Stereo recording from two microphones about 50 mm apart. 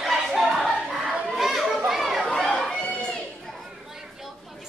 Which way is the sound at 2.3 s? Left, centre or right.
Centre.